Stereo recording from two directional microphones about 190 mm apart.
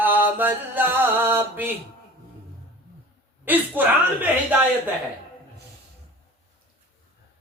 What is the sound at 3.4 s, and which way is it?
Music, 10° right (ahead or behind).